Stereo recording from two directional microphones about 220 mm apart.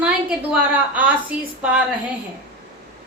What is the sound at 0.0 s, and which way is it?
A woman's voice, 5° right (ahead or behind).